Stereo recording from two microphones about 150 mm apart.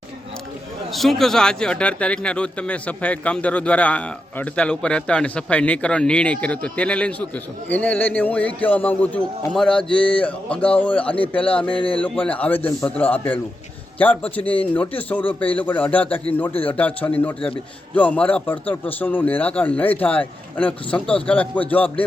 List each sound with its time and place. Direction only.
0.9 s a man's voice: centre (ahead or behind)
11.7 s speech: 35° left (ahead or behind)
11.9 s a man's voice: 10° left (ahead or behind)